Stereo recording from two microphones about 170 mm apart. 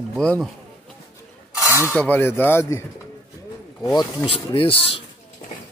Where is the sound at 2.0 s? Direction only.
10° left (ahead or behind).